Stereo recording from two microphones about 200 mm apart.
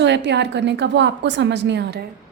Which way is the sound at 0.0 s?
60° right (ahead or behind).